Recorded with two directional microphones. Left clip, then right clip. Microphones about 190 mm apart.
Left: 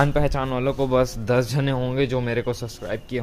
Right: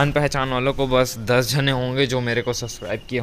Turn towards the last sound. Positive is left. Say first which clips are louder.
# right 2 dB
turn(degrees=-15)  # may be behind; listen again after turning